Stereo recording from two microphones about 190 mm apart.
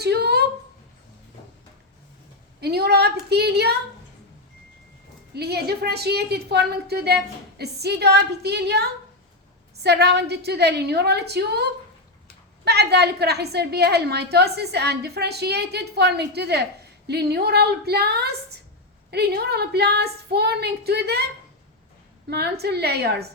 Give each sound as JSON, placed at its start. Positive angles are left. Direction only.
{"t": 0.0, "sound": "a sound", "side_deg": -60}
{"t": 2.6, "sound": "a woman's voice", "side_deg": -60}
{"t": 5.3, "sound": "a woman's voice", "side_deg": -60}
{"t": 12.6, "sound": "a woman's voice", "side_deg": -60}
{"t": 22.3, "sound": "a woman's voice", "side_deg": -60}